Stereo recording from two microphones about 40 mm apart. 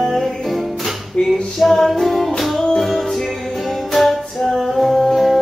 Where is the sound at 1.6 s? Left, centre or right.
Centre.